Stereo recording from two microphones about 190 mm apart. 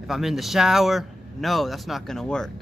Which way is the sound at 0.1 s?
Centre (ahead or behind).